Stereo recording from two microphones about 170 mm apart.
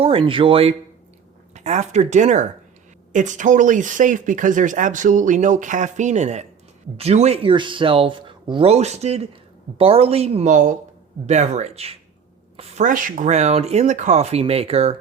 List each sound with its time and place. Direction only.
0.0 s speech: 35° right (ahead or behind)
1.5 s speech: 40° right (ahead or behind)